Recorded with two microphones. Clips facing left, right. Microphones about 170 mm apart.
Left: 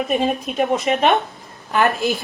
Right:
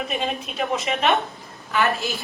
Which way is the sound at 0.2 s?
45° left (ahead or behind).